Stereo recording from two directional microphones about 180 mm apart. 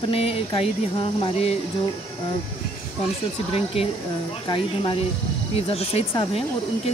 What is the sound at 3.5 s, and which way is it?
Speech, 35° left (ahead or behind).